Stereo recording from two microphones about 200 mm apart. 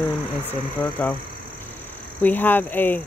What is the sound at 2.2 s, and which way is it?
Speech, 10° left (ahead or behind).